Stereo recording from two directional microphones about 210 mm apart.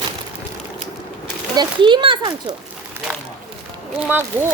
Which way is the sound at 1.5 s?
20° right (ahead or behind).